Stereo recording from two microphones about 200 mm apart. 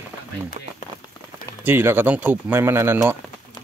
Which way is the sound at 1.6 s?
10° right (ahead or behind).